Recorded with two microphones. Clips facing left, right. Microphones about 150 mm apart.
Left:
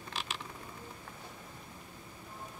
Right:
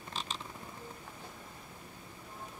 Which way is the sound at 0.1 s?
85° left.